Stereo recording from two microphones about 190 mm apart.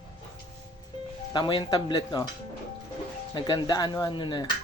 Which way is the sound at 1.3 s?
25° left (ahead or behind).